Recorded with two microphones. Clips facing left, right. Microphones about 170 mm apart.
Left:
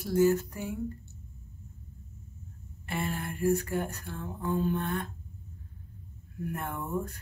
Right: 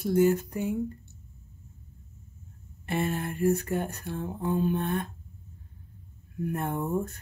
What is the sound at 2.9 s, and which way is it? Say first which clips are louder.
Speech: right 5 dB; 25° right (ahead or behind).